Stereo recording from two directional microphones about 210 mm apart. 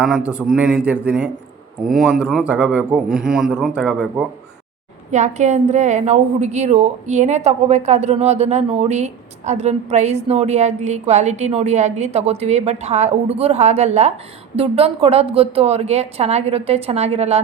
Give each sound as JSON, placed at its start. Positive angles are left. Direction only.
{"t": 0.3, "sound": "speech", "side_deg": -5}
{"t": 5.1, "sound": "a woman's voice", "side_deg": -35}